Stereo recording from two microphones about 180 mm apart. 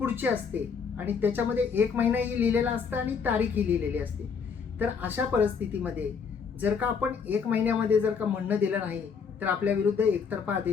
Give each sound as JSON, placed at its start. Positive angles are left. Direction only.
{"t": 0.0, "sound": "a woman's voice", "side_deg": -10}